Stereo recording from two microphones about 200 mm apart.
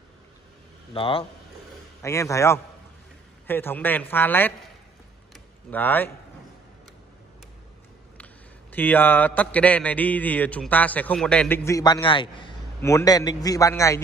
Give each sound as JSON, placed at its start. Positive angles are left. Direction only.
{"t": 0.9, "sound": "speech", "side_deg": 25}
{"t": 2.0, "sound": "a man's voice", "side_deg": 15}
{"t": 5.3, "sound": "a sound", "side_deg": 10}
{"t": 8.7, "sound": "a man's voice", "side_deg": 10}